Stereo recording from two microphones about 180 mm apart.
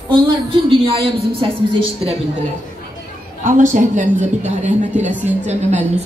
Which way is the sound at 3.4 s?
45° right (ahead or behind).